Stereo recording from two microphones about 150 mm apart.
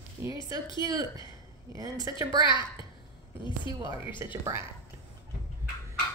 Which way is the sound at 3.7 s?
30° left (ahead or behind).